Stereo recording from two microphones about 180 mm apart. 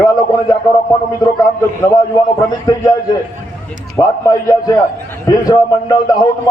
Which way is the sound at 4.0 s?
15° left (ahead or behind).